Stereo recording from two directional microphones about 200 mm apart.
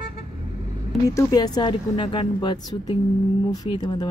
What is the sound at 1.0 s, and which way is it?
Speech, 20° left (ahead or behind).